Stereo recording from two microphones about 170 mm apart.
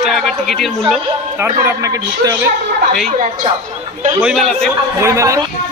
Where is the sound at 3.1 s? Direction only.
45° right (ahead or behind).